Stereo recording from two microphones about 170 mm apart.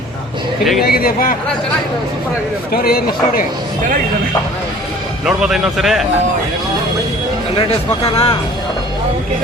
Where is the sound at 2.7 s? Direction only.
60° left (ahead or behind).